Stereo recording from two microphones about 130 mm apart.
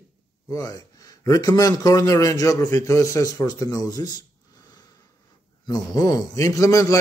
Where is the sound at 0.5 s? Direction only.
25° left (ahead or behind).